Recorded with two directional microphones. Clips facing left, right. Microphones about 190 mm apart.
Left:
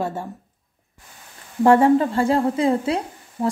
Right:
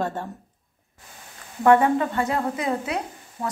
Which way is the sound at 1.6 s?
30° left (ahead or behind).